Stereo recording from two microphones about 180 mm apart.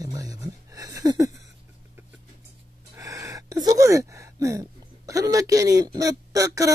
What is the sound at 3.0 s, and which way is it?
Speech, 20° right (ahead or behind).